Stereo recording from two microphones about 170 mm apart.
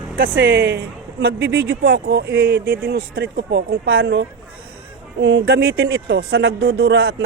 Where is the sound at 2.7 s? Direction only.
80° right.